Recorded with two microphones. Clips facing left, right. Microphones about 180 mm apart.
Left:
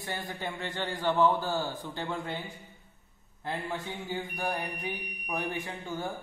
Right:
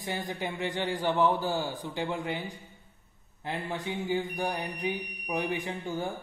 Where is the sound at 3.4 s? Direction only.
15° right (ahead or behind).